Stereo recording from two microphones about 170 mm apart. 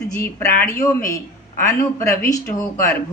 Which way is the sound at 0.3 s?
15° left (ahead or behind).